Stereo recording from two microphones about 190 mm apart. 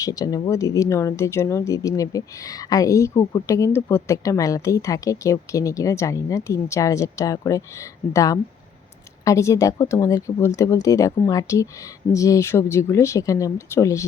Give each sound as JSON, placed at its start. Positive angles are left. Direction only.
{"t": 0.0, "sound": "speech", "side_deg": 20}